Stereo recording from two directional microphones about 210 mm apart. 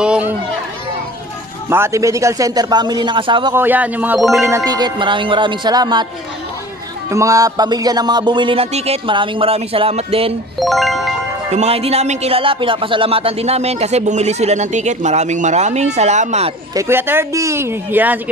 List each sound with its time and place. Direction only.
0.0 s a sound: 5° right (ahead or behind)
1.7 s speech: 15° right (ahead or behind)
3.5 s speech: 10° right (ahead or behind)
4.5 s speech: 15° right (ahead or behind)
7.1 s speech: 15° right (ahead or behind)
10.6 s music: centre (ahead or behind)
11.5 s speech: 30° right (ahead or behind)
16.7 s speech: 10° right (ahead or behind)